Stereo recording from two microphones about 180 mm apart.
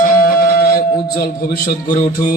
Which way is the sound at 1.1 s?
55° left (ahead or behind).